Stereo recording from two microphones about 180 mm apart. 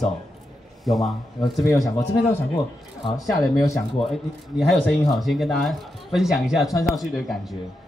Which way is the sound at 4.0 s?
Centre (ahead or behind).